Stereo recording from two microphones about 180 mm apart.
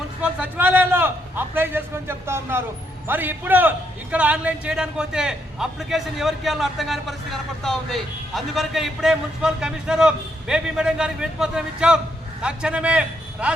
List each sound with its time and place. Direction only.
0.2 s a man's voice: 5° right (ahead or behind)